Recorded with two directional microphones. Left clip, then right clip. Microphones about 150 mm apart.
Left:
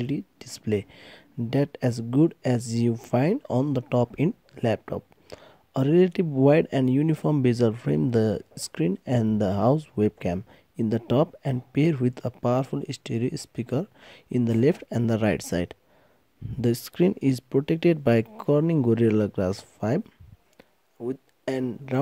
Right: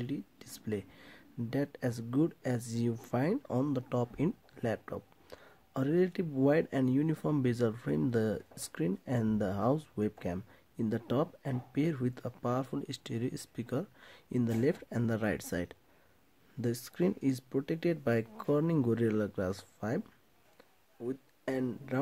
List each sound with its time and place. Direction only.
0.0 s speech: 40° left (ahead or behind)
21.1 s speech: 45° left (ahead or behind)